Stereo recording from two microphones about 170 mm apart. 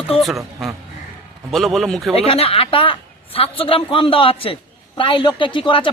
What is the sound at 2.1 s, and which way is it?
A man's voice, 35° left (ahead or behind).